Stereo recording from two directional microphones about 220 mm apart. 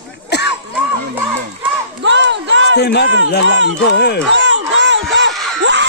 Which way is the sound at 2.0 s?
55° right (ahead or behind).